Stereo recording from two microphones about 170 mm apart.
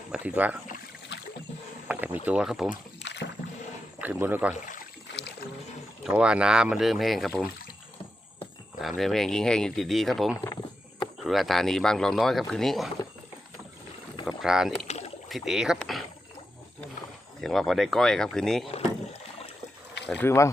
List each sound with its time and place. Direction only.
0.1 s a man's voice: 10° right (ahead or behind)
1.9 s a sound: 10° right (ahead or behind)
2.2 s speech: 5° right (ahead or behind)
3.0 s rowboat: 90° left
4.0 s a man's voice: 10° right (ahead or behind)
4.5 s speech: 50° left (ahead or behind)
5.1 s boat: 80° left
6.1 s speech: 5° right (ahead or behind)
8.8 s speech: centre (ahead or behind)
14.3 s speech: 5° right (ahead or behind)
14.8 s rowboat: 40° left (ahead or behind)
15.3 s speech: centre (ahead or behind)
17.4 s speech: centre (ahead or behind)
20.1 s speech: 10° left (ahead or behind)